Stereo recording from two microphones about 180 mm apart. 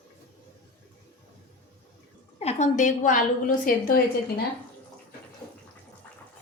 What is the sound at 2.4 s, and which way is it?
A woman's voice, 35° left (ahead or behind).